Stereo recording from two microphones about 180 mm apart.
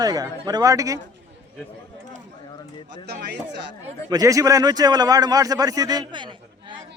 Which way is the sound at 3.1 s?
65° right (ahead or behind).